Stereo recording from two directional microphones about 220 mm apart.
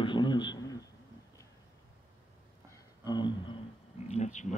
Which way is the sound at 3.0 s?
20° left (ahead or behind).